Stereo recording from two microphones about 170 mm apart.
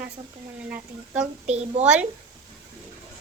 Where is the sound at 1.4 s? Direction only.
40° right (ahead or behind).